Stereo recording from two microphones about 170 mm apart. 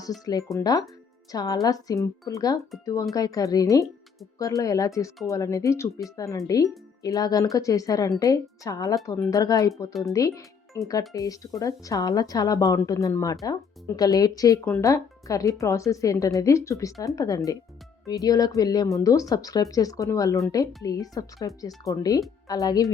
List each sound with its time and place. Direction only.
0.5 s speech: 20° left (ahead or behind)